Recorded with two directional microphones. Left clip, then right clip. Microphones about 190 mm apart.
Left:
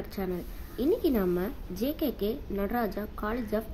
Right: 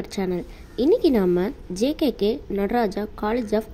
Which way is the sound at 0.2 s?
30° right (ahead or behind).